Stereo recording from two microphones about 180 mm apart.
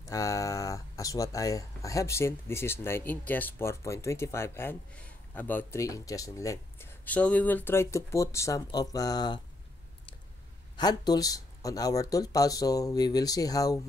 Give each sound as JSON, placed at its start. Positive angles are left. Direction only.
{"t": 0.0, "sound": "speech", "side_deg": 15}
{"t": 10.8, "sound": "speech", "side_deg": 20}